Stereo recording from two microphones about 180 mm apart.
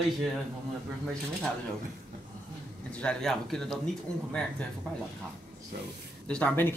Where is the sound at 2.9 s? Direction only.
5° left (ahead or behind).